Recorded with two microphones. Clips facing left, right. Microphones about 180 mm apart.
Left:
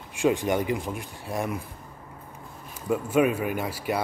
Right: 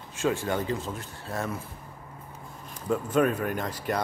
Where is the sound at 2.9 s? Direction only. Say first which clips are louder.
Left 2 dB; 10° left (ahead or behind).